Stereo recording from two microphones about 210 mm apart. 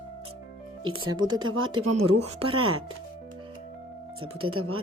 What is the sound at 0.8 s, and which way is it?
Speech, 25° right (ahead or behind).